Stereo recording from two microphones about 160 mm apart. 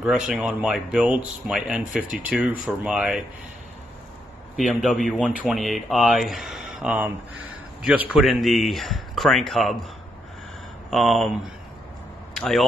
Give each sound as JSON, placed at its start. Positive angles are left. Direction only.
{"t": 0.3, "sound": "a man's voice", "side_deg": -5}
{"t": 2.0, "sound": "speech", "side_deg": -60}
{"t": 2.3, "sound": "a man's voice", "side_deg": -5}
{"t": 4.6, "sound": "a man's voice", "side_deg": 0}
{"t": 10.9, "sound": "a man's voice", "side_deg": 0}
{"t": 12.4, "sound": "speech", "side_deg": 0}